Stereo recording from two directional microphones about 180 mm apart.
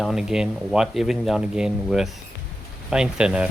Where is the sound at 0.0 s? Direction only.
Centre (ahead or behind).